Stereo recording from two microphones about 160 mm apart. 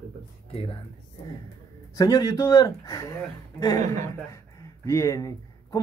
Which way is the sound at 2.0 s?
25° left (ahead or behind).